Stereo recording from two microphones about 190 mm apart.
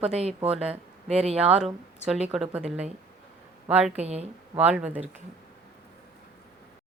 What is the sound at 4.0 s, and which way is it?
Speech, 35° right (ahead or behind).